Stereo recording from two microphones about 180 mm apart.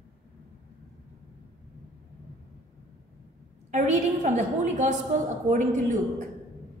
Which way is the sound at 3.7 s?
40° right (ahead or behind).